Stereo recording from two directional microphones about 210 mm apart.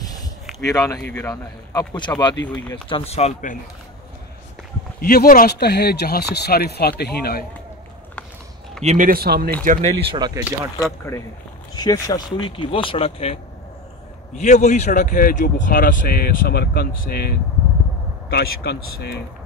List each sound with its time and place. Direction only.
0.7 s a man's voice: 15° left (ahead or behind); by 3.5 s 35° left (ahead or behind)
5.0 s speech: 45° left (ahead or behind)
8.8 s speech: 40° right (ahead or behind)
9.7 s speech: 35° right (ahead or behind)
10.1 s speech: 20° right (ahead or behind)
11.7 s speech: 20° left (ahead or behind); by 19.2 s 50° left (ahead or behind)